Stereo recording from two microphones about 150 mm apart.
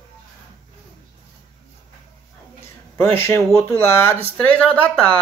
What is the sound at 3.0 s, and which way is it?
Speech, 15° left (ahead or behind).